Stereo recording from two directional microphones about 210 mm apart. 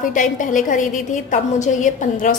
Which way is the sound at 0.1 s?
40° left (ahead or behind).